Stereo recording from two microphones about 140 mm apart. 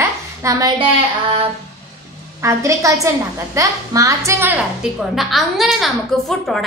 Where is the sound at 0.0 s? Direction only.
25° right (ahead or behind).